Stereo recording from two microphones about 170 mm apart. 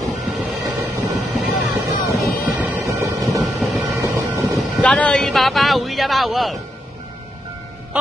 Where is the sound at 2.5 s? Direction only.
10° right (ahead or behind).